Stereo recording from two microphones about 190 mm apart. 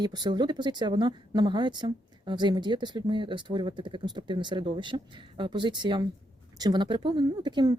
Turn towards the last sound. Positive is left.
turn(degrees=-25)  # may be behind; listen again after turning